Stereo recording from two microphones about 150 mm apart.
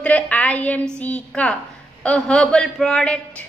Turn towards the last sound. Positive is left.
turn(degrees=5)  # may be behind; listen again after turning